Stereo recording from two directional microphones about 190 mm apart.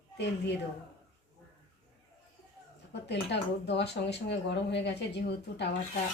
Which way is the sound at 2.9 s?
65° left (ahead or behind).